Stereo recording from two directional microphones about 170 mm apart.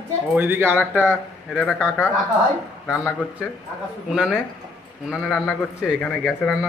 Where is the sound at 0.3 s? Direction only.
10° right (ahead or behind).